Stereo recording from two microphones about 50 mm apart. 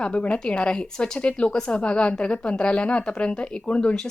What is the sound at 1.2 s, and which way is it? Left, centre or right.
A woman's voice, left.